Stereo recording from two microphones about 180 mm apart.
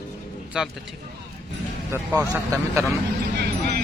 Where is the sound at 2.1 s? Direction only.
15° right (ahead or behind).